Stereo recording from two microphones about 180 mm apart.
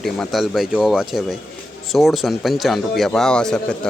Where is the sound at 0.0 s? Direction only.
Centre (ahead or behind).